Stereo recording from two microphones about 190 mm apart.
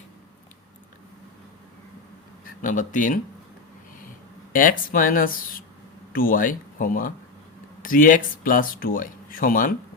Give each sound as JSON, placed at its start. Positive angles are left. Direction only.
{"t": 2.6, "sound": "speech", "side_deg": 45}
{"t": 4.5, "sound": "speech", "side_deg": 45}